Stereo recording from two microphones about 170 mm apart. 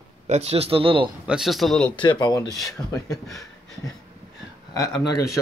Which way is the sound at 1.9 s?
25° left (ahead or behind).